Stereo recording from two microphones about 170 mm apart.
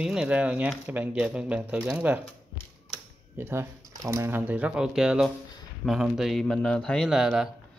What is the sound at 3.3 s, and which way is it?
A man's voice, 15° right (ahead or behind).